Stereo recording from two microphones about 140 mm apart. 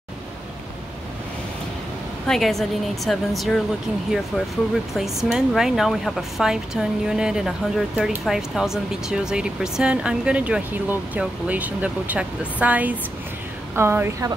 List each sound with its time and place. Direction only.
2.2 s a woman's voice: centre (ahead or behind)
4.9 s a woman's voice: centre (ahead or behind); by 14.3 s 15° right (ahead or behind)